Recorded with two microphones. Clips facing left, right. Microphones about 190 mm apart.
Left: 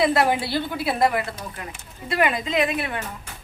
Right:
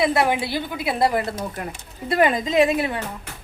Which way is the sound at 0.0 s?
20° right (ahead or behind).